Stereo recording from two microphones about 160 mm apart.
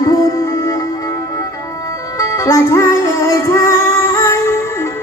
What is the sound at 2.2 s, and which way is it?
Music, 20° left (ahead or behind).